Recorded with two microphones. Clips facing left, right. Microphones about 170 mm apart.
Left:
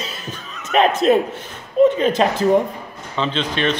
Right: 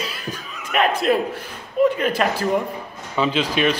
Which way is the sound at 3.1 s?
10° right (ahead or behind).